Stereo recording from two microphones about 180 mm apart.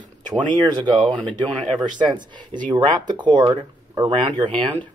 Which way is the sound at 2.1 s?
25° right (ahead or behind).